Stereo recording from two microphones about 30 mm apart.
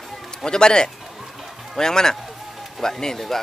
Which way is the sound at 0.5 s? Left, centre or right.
Left.